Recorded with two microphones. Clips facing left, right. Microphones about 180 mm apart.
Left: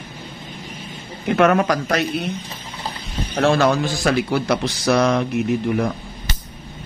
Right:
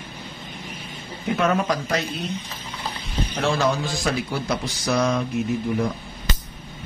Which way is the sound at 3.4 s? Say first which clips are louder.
Left 6 dB; 70° left (ahead or behind).